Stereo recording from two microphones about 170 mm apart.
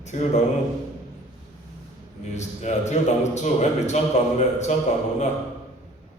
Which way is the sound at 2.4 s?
45° left (ahead or behind).